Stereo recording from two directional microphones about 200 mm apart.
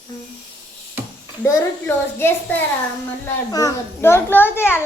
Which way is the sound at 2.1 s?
10° left (ahead or behind).